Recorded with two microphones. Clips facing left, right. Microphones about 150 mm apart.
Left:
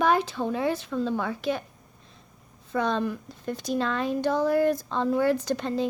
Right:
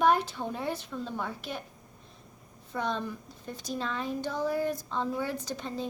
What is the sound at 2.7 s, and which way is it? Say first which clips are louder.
Speech: left 6 dB; 90° left.